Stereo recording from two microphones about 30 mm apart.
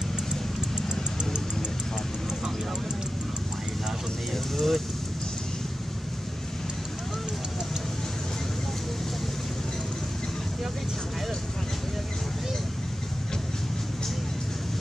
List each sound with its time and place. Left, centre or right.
4.6 s vehicle: centre